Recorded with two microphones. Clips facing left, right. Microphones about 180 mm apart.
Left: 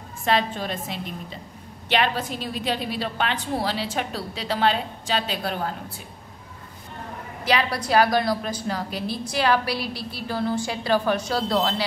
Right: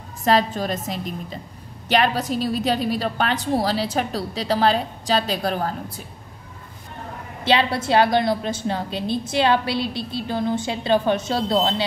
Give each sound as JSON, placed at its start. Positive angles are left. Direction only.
{"t": 0.2, "sound": "a woman's voice", "side_deg": -40}
{"t": 7.4, "sound": "a woman's voice", "side_deg": -25}